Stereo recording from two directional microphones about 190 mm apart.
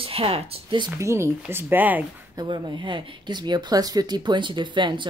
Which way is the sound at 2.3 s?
25° right (ahead or behind).